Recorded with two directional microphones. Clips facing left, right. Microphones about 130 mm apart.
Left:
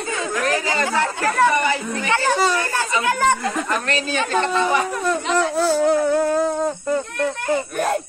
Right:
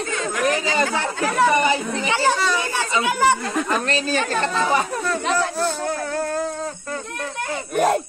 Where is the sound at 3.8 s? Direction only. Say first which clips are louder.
Right 1 dB; 35° right (ahead or behind).